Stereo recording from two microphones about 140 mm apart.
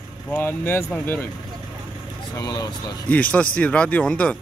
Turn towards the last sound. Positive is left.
turn(degrees=10)  # may be behind; listen again after turning